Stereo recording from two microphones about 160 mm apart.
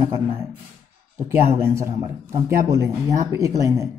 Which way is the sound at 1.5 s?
15° right (ahead or behind).